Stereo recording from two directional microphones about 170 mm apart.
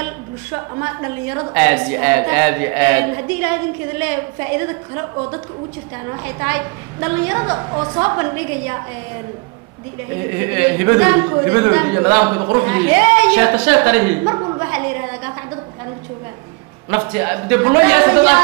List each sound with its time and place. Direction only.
0.0 s a woman's voice: 15° right (ahead or behind)
6.0 s a woman's voice: 20° right (ahead or behind)
10.3 s speech: 10° right (ahead or behind)
14.7 s a sound: 15° right (ahead or behind)
16.9 s speech: 15° right (ahead or behind)